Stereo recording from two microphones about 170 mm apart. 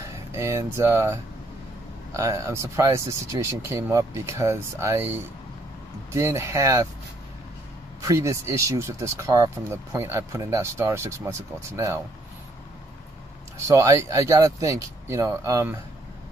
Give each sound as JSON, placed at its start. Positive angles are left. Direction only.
{"t": 0.0, "sound": "speech", "side_deg": -15}
{"t": 8.0, "sound": "speech", "side_deg": -20}
{"t": 13.7, "sound": "speech", "side_deg": -20}